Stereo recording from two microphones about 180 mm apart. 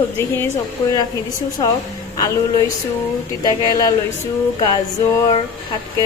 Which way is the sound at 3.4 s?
20° left (ahead or behind).